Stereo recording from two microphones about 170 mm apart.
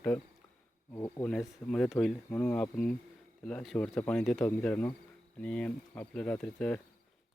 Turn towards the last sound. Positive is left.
turn(degrees=5)  # may be behind; listen again after turning